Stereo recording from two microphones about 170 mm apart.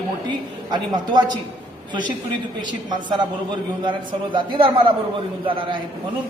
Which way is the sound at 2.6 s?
25° right (ahead or behind).